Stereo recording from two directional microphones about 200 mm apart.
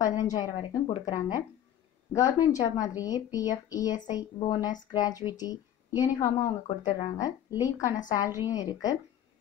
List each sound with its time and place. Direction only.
0.0 s speech: 20° left (ahead or behind)